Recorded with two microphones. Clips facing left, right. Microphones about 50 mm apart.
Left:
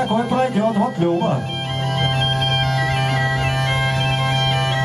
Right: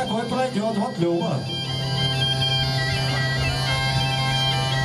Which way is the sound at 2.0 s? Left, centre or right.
Left.